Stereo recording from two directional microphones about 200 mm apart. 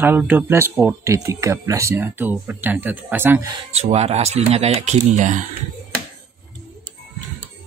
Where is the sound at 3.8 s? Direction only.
30° right (ahead or behind).